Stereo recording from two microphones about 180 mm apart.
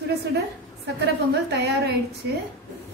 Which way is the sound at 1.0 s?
65° right (ahead or behind).